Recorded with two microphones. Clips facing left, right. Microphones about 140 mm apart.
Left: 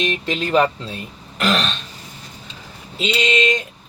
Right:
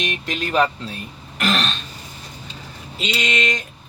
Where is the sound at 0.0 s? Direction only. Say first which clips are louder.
Left 4 dB; 30° left (ahead or behind).